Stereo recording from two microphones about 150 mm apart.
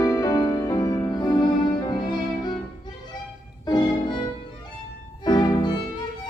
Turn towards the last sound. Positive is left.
turn(degrees=30)  # may be behind; listen again after turning